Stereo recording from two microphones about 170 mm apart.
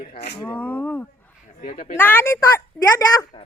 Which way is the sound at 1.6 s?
35° left (ahead or behind).